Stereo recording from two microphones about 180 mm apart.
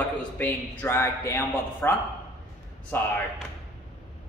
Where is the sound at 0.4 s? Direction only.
10° left (ahead or behind).